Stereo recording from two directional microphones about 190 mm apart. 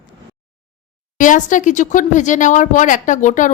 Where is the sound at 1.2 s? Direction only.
40° left (ahead or behind).